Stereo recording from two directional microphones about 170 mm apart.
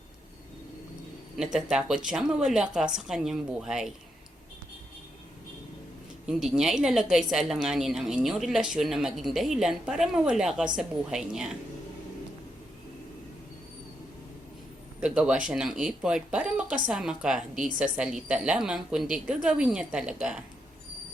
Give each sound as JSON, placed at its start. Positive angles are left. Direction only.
{"t": 1.5, "sound": "a woman's voice", "side_deg": -5}
{"t": 6.2, "sound": "a woman's voice", "side_deg": -5}
{"t": 15.0, "sound": "a woman's voice", "side_deg": -5}